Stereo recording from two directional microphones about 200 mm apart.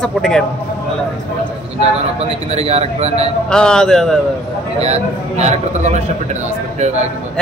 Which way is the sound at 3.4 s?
5° left (ahead or behind).